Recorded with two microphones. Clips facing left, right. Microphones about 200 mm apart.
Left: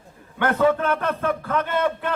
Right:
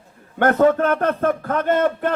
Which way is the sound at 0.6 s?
50° right (ahead or behind).